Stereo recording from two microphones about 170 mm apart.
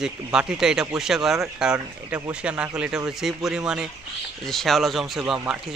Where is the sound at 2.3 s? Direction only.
5° right (ahead or behind).